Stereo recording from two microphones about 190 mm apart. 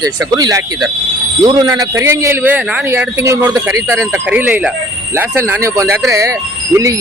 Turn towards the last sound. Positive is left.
turn(degrees=-15)  # may be behind; listen again after turning